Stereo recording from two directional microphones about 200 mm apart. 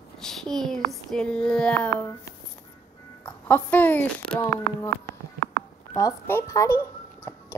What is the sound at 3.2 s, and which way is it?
Speech, 10° left (ahead or behind).